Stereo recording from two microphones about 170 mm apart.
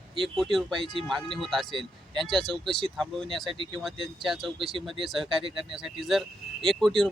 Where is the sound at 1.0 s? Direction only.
Centre (ahead or behind).